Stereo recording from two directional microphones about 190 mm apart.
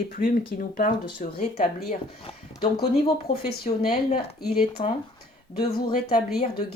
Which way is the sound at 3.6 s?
35° left (ahead or behind).